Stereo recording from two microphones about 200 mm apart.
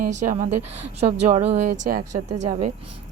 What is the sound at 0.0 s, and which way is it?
A woman's voice, 40° right (ahead or behind).